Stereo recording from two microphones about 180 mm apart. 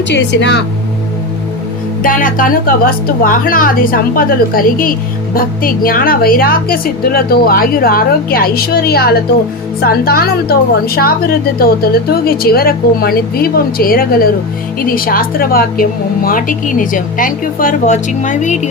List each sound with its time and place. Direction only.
0.1 s speech: 75° left (ahead or behind)
2.0 s a woman's voice: 50° left (ahead or behind)